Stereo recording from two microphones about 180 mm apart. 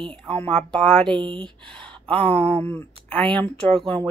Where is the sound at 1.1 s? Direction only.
25° right (ahead or behind).